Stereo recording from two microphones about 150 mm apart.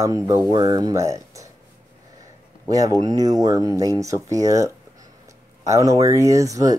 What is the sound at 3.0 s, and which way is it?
Speech, 25° right (ahead or behind).